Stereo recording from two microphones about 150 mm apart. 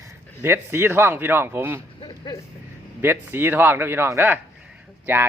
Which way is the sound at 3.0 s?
15° right (ahead or behind).